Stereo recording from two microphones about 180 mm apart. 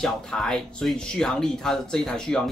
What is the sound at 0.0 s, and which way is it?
A man's voice, 5° left (ahead or behind).